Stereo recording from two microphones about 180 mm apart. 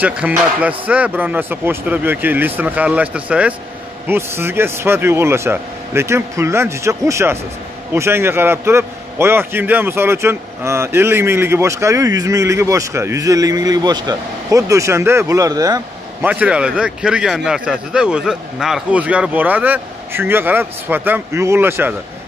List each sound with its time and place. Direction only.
0.0 s a man's voice: 10° right (ahead or behind)
16.3 s a man's voice: 5° right (ahead or behind)